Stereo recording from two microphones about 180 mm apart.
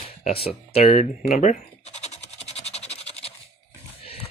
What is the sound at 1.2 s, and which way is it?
Scratch, 40° left (ahead or behind).